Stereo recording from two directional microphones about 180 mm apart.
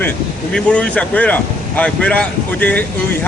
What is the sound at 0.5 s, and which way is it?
Speech, 5° left (ahead or behind).